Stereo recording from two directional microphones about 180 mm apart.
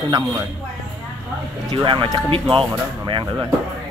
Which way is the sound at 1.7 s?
25° right (ahead or behind).